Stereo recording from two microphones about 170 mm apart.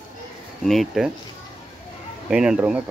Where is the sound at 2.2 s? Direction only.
5° right (ahead or behind).